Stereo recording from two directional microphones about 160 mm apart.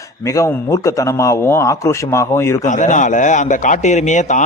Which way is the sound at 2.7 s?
50° left (ahead or behind).